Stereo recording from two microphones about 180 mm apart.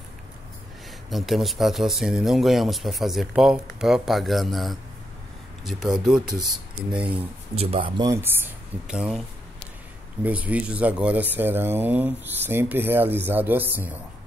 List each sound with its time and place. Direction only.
1.1 s speech: centre (ahead or behind)
7.2 s speech: 35° right (ahead or behind)
8.0 s speech: 15° right (ahead or behind)
10.2 s speech: 10° right (ahead or behind)